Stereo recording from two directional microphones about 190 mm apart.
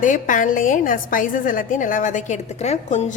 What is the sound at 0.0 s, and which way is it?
A woman's voice, 45° left (ahead or behind).